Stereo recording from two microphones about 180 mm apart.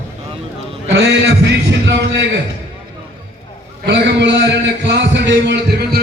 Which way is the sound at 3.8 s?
75° right (ahead or behind).